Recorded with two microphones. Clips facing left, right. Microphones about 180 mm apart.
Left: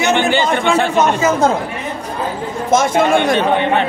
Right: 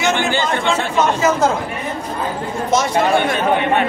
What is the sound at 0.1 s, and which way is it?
Speech, 70° left (ahead or behind).